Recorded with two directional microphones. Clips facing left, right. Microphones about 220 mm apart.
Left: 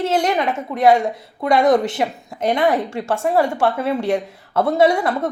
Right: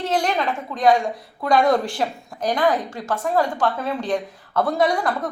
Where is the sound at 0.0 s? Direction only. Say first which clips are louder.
Left 4 dB; 25° left (ahead or behind).